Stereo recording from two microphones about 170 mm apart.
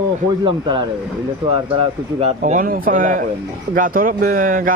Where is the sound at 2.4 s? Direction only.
50° right (ahead or behind).